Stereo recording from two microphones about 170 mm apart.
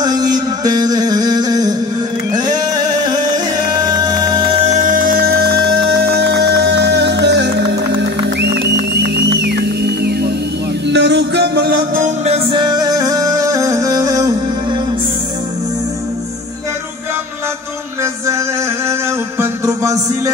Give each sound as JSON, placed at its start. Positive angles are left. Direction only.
{"t": 0.0, "sound": "music", "side_deg": -25}
{"t": 4.7, "sound": "music", "side_deg": -50}
{"t": 8.4, "sound": "music", "side_deg": -80}
{"t": 10.9, "sound": "music", "side_deg": -90}
{"t": 12.3, "sound": "music", "side_deg": -30}
{"t": 19.4, "sound": "music", "side_deg": -20}